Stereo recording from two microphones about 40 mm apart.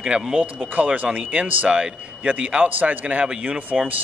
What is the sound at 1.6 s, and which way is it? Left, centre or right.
A man's voice, right.